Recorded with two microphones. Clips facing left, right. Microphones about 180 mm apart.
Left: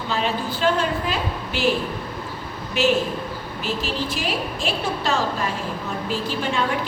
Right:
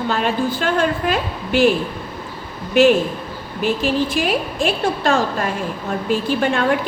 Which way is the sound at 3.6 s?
55° right (ahead or behind).